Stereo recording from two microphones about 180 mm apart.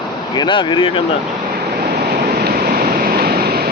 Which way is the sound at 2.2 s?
60° right (ahead or behind).